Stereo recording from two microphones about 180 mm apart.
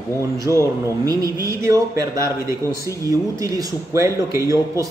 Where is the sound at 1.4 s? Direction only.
15° right (ahead or behind).